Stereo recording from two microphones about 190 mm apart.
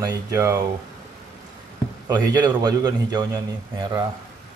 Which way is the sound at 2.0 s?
20° right (ahead or behind).